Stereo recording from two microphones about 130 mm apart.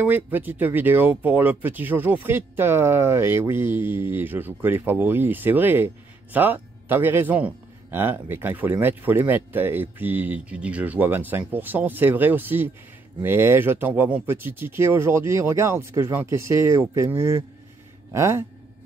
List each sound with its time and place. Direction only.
0.0 s a man's voice: 15° right (ahead or behind)
18.1 s speech: 20° right (ahead or behind)